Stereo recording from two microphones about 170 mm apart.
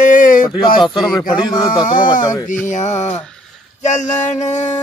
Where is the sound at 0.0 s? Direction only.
50° left (ahead or behind).